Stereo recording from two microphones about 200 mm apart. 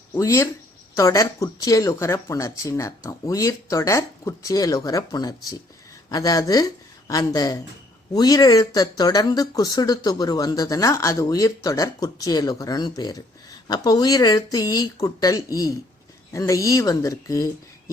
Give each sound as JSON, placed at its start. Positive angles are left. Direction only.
{"t": 0.1, "sound": "speech", "side_deg": 15}